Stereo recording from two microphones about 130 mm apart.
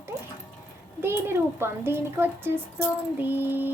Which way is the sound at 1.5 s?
20° right (ahead or behind).